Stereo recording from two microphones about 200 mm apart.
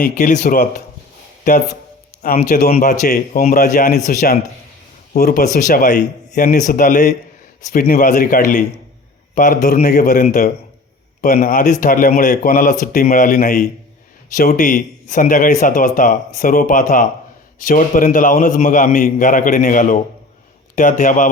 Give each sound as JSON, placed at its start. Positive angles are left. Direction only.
{"t": 0.0, "sound": "speech", "side_deg": 45}
{"t": 2.2, "sound": "speech", "side_deg": 45}